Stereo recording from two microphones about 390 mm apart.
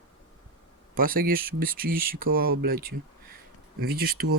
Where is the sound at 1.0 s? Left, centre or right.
Right.